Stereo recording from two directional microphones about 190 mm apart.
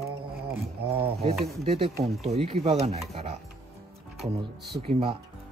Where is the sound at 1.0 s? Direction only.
35° right (ahead or behind).